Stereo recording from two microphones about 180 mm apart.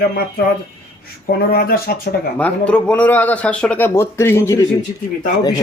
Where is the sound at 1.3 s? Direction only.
55° left (ahead or behind).